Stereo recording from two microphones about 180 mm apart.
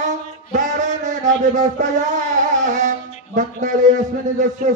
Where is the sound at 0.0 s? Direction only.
45° right (ahead or behind).